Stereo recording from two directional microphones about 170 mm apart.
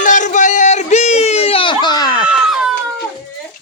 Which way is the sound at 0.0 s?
45° left (ahead or behind).